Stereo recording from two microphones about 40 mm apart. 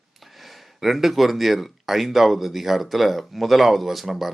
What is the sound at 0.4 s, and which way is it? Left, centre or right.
Speech, centre.